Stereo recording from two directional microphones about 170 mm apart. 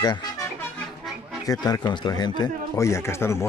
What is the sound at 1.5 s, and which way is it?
Speech, 25° left (ahead or behind).